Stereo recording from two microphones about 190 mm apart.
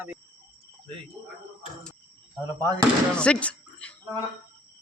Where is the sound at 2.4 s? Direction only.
15° right (ahead or behind).